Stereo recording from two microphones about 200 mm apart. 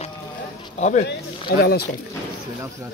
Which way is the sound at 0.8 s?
35° left (ahead or behind).